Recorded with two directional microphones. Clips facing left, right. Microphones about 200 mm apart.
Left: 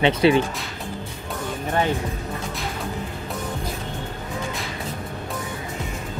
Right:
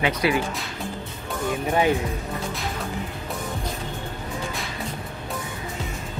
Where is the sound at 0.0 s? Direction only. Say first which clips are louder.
Left 5 dB; 25° left (ahead or behind).